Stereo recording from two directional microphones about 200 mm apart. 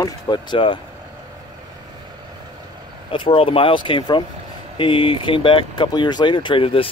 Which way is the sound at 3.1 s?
25° left (ahead or behind).